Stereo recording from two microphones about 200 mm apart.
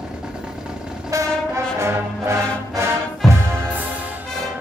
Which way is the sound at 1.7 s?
15° right (ahead or behind).